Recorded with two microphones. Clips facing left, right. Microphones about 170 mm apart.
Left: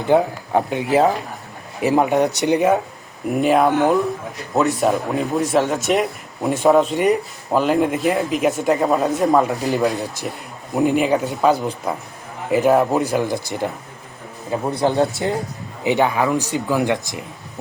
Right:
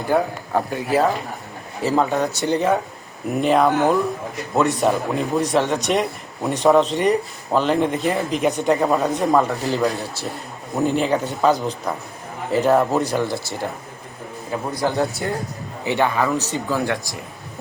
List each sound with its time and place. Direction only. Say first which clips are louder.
0.1 s a man's voice: left 4 dB; 20° left (ahead or behind)